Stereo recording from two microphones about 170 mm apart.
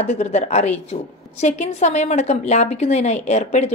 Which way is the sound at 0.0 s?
40° left (ahead or behind).